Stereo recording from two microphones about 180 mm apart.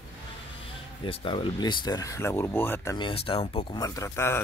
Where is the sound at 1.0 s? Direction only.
30° left (ahead or behind).